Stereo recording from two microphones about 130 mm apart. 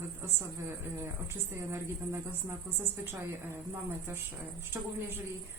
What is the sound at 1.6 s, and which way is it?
Speech, 15° right (ahead or behind).